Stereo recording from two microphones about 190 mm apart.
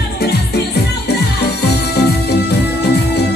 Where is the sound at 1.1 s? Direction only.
60° left (ahead or behind).